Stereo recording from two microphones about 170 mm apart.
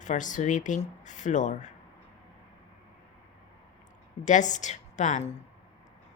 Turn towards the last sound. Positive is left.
turn(degrees=40)  # may be behind; listen again after turning